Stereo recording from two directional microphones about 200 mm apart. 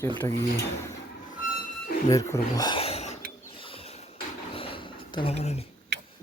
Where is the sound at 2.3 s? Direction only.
20° left (ahead or behind).